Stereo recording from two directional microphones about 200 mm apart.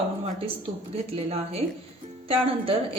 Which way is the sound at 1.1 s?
30° right (ahead or behind).